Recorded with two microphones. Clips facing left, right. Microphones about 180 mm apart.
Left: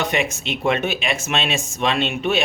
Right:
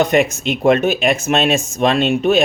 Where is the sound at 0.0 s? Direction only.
40° right (ahead or behind).